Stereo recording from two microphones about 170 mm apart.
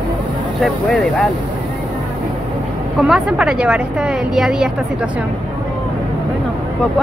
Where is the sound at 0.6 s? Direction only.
Centre (ahead or behind).